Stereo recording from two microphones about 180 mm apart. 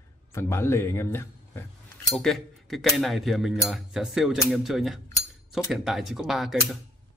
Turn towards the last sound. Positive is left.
turn(degrees=0)  # may be behind; listen again after turning